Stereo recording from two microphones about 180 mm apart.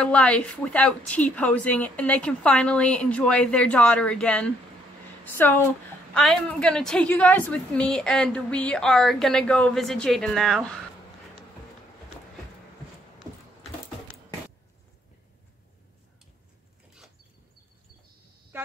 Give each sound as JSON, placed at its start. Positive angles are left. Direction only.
{"t": 0.0, "sound": "a woman's voice", "side_deg": 5}